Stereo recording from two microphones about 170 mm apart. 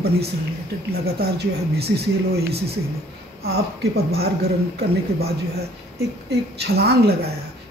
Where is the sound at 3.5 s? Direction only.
70° right (ahead or behind).